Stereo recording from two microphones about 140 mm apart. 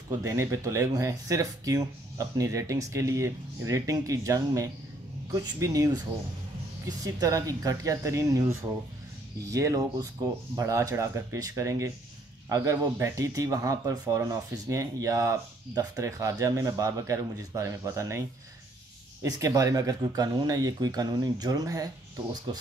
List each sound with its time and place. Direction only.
0.2 s speech: 20° right (ahead or behind)
7.1 s speech: 25° right (ahead or behind)
19.2 s speech: 25° right (ahead or behind)